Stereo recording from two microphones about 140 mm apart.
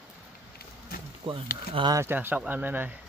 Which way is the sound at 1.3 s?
40° right (ahead or behind).